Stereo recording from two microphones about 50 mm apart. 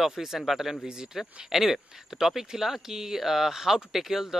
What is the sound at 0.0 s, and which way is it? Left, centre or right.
Speech, centre.